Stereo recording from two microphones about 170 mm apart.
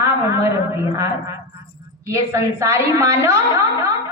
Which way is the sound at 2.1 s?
20° right (ahead or behind).